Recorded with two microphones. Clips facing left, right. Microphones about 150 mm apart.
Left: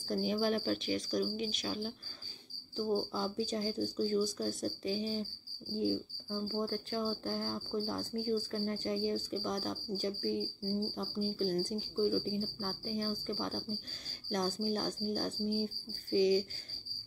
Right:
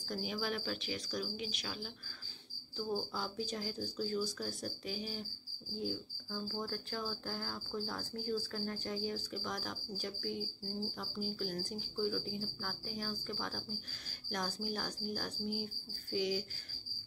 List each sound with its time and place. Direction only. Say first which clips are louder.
0.1 s speech: left 7 dB; 35° left (ahead or behind)
2.9 s cricket: left 5 dB; 25° left (ahead or behind)